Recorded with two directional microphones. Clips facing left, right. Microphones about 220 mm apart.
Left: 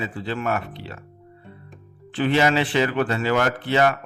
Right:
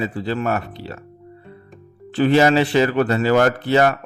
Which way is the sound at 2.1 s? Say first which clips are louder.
Right 5 dB; 40° right (ahead or behind).